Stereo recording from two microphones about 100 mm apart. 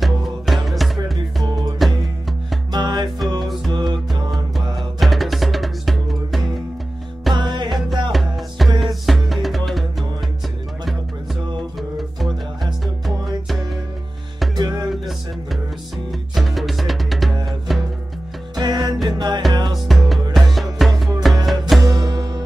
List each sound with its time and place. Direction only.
0.0 s music: centre (ahead or behind)
1.1 s music: 45° right (ahead or behind)
1.8 s music: centre (ahead or behind)
2.7 s music: 45° right (ahead or behind)
4.7 s music: centre (ahead or behind)
7.3 s music: 50° right (ahead or behind)
8.1 s music: centre (ahead or behind)
12.0 s music: centre (ahead or behind)
14.5 s music: 45° right (ahead or behind)
14.9 s music: centre (ahead or behind)
18.5 s music: 45° right (ahead or behind)
19.9 s music: centre (ahead or behind)
21.8 s music: 40° right (ahead or behind)